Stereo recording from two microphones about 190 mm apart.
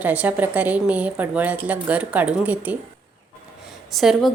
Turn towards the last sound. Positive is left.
turn(degrees=0)  # may be behind; listen again after turning